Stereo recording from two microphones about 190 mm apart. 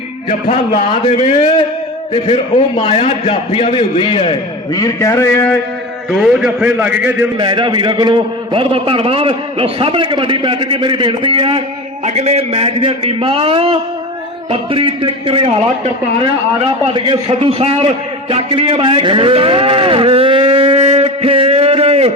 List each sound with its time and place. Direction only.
0.3 s a man's voice: 35° left (ahead or behind); by 5.5 s 10° left (ahead or behind)
6.1 s a man's voice: 5° right (ahead or behind)
7.3 s a man's voice: 25° right (ahead or behind)